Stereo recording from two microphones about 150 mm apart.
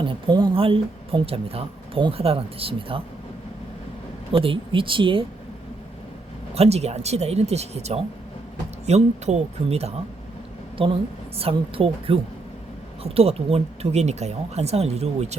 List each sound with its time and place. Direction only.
0.0 s speech: 30° right (ahead or behind)
4.3 s speech: 35° right (ahead or behind)
6.5 s speech: 45° right (ahead or behind)